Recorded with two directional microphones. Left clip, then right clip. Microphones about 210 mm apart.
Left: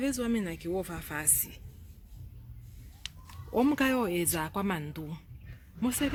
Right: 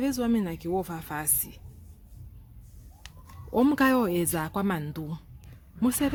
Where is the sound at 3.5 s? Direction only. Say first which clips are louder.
Right 4 dB; 30° right (ahead or behind).